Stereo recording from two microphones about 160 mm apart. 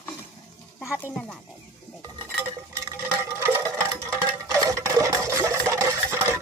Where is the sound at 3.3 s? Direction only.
15° right (ahead or behind).